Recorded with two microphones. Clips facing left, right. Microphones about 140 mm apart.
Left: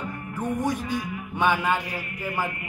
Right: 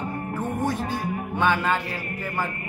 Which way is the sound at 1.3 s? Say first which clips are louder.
Even; 15° left (ahead or behind).